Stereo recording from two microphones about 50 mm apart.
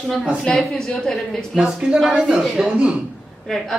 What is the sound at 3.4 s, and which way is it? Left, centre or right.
Speech, centre.